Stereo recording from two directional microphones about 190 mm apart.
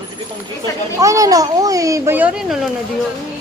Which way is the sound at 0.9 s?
15° right (ahead or behind).